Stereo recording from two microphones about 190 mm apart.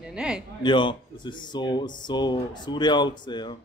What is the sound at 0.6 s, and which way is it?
Speech, 25° left (ahead or behind).